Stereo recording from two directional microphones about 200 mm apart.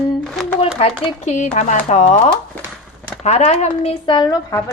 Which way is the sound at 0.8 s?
30° left (ahead or behind).